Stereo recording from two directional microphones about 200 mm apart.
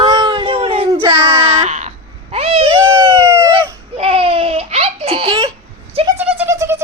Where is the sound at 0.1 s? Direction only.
20° right (ahead or behind).